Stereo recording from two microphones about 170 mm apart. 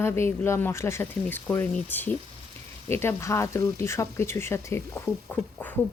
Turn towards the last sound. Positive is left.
turn(degrees=10)  # may be behind; listen again after turning